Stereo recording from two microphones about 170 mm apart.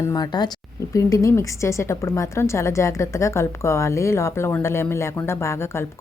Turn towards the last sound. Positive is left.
turn(degrees=15)  # may be behind; listen again after turning